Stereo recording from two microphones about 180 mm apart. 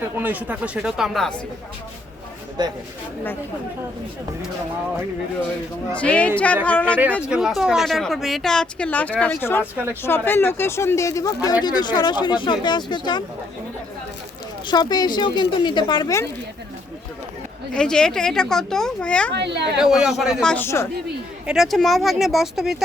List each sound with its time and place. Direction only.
0.2 s speech: 10° right (ahead or behind)
2.6 s speech: 25° right (ahead or behind)
5.9 s speech: 5° left (ahead or behind)
7.2 s speech: 5° right (ahead or behind); by 13.2 s 25° left (ahead or behind)
14.7 s speech: 25° left (ahead or behind)
17.7 s speech: 5° left (ahead or behind)
19.3 s speech: 70° right (ahead or behind)
19.8 s speech: 5° right (ahead or behind); by 20.8 s 15° left (ahead or behind)
21.4 s speech: centre (ahead or behind)